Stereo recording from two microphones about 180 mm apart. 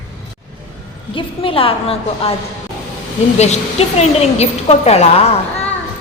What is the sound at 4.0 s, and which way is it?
A woman's voice, 35° left (ahead or behind).